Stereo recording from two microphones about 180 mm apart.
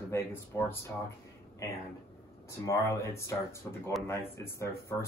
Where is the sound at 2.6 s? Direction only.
15° left (ahead or behind).